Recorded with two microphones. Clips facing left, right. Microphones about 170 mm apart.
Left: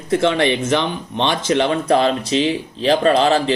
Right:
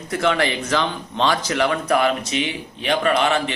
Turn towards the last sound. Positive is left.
turn(degrees=30)  # may be behind; listen again after turning